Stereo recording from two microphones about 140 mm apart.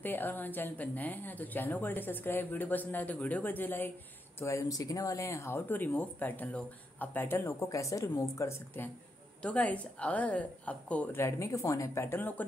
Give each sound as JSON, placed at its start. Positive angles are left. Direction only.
{"t": 0.0, "sound": "speech", "side_deg": 15}